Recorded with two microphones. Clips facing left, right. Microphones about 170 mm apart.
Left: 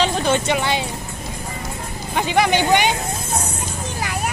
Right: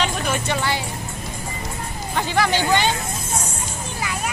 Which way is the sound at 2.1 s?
20° left (ahead or behind).